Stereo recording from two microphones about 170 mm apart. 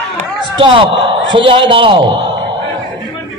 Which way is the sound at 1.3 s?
30° right (ahead or behind).